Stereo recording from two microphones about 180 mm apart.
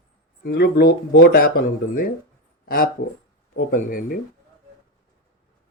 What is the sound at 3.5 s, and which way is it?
Speech, 50° left (ahead or behind).